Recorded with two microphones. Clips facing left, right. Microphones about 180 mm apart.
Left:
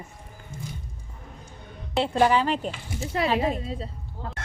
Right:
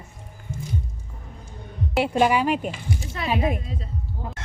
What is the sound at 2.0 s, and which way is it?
Speech, 15° right (ahead or behind).